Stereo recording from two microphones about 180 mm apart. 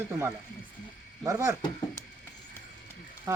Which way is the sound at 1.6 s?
25° left (ahead or behind).